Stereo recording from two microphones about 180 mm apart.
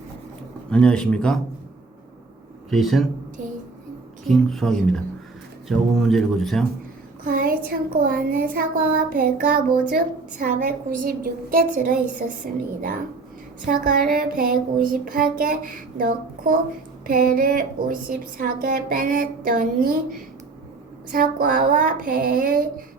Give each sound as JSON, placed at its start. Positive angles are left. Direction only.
{"t": 0.7, "sound": "speech", "side_deg": 5}
{"t": 2.6, "sound": "a man's voice", "side_deg": 0}
{"t": 3.4, "sound": "a sound", "side_deg": -45}
{"t": 4.3, "sound": "speech", "side_deg": 0}
{"t": 7.3, "sound": "child singing", "side_deg": -55}
{"t": 13.7, "sound": "child singing", "side_deg": -55}
{"t": 21.1, "sound": "child singing", "side_deg": -50}